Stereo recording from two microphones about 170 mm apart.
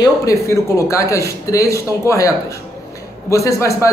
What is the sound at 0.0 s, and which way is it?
A man's voice, 20° left (ahead or behind).